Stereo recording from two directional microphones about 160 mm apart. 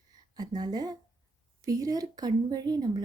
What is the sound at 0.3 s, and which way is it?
Speech, 25° right (ahead or behind).